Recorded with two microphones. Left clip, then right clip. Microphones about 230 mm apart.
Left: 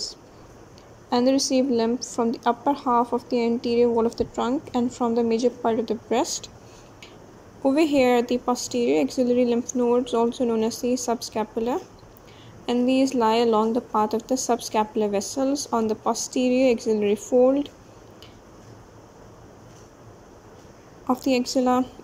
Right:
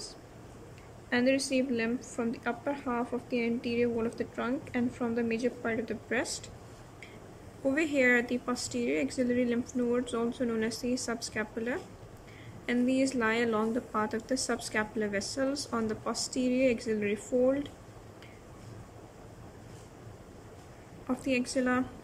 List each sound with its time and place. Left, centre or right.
1.1 s speech: centre
7.6 s speech: centre
21.1 s speech: centre